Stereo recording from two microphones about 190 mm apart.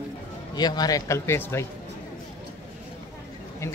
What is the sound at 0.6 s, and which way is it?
Speech, 20° left (ahead or behind).